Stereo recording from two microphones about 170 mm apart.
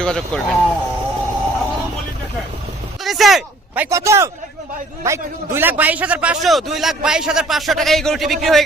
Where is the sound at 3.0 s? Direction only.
Centre (ahead or behind).